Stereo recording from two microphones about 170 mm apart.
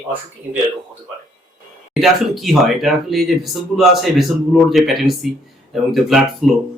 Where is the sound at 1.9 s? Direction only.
Centre (ahead or behind).